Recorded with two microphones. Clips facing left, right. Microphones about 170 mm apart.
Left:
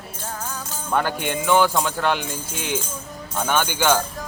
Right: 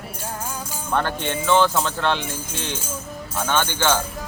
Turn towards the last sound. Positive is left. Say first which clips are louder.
# left 1 dB
turn(degrees=10)  # may be behind; listen again after turning